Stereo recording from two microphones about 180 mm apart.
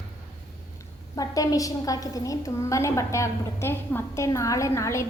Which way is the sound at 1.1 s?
20° left (ahead or behind).